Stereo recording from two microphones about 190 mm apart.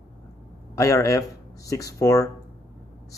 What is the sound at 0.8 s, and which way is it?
Speech, 15° left (ahead or behind).